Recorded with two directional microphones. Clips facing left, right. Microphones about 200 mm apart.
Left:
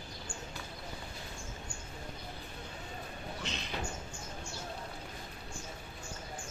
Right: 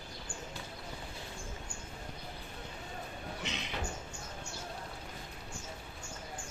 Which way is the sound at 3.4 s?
15° right (ahead or behind).